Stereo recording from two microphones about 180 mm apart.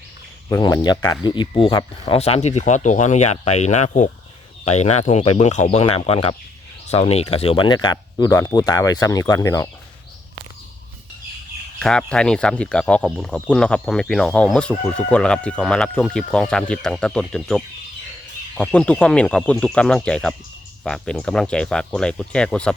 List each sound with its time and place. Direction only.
0.5 s speech: 20° left (ahead or behind)
11.8 s speech: 5° left (ahead or behind)